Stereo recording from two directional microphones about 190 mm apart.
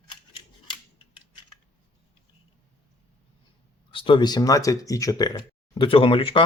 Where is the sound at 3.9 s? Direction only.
25° left (ahead or behind).